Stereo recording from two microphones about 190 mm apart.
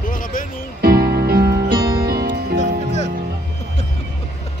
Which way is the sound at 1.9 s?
55° right (ahead or behind).